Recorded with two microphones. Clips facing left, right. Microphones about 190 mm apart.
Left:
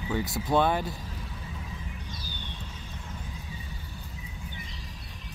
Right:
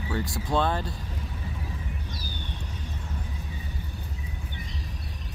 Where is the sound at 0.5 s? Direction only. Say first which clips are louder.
Left 2 dB; 10° left (ahead or behind).